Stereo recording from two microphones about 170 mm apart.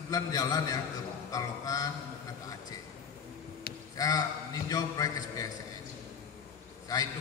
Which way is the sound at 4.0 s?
20° left (ahead or behind).